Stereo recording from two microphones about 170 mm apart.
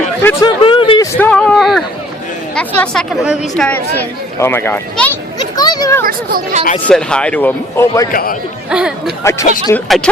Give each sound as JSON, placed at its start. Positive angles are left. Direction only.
{"t": 0.2, "sound": "speech", "side_deg": 15}
{"t": 0.6, "sound": "a sound", "side_deg": 30}
{"t": 1.2, "sound": "a sound", "side_deg": 10}
{"t": 2.6, "sound": "speech", "side_deg": 5}
{"t": 5.4, "sound": "a sound", "side_deg": 25}
{"t": 6.1, "sound": "speech", "side_deg": -60}
{"t": 6.8, "sound": "speech", "side_deg": 5}
{"t": 8.1, "sound": "a man's voice", "side_deg": 55}
{"t": 8.7, "sound": "speech", "side_deg": -5}
{"t": 9.2, "sound": "speech", "side_deg": 15}
{"t": 9.7, "sound": "speech", "side_deg": 5}